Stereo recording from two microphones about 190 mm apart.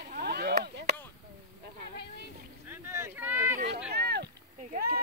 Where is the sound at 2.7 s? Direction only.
15° right (ahead or behind).